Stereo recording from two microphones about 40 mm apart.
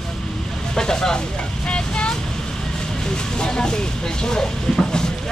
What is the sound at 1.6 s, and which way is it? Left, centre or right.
Vehicle, left.